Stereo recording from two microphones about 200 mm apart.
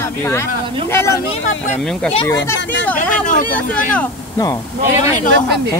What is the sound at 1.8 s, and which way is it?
Speech, centre (ahead or behind).